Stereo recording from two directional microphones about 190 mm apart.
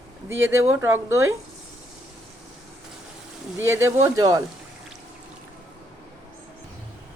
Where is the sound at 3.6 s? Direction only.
15° right (ahead or behind).